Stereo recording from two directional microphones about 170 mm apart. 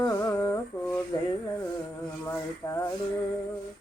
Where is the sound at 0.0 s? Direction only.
20° left (ahead or behind).